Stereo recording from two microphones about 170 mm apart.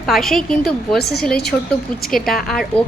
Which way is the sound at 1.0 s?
70° left (ahead or behind).